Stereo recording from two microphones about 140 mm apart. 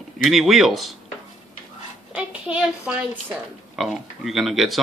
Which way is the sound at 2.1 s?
5° right (ahead or behind).